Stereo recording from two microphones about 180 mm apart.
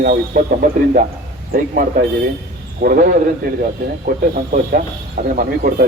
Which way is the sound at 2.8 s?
50° right (ahead or behind).